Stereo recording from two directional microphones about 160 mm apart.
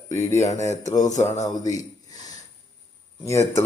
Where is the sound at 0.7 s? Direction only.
50° left (ahead or behind).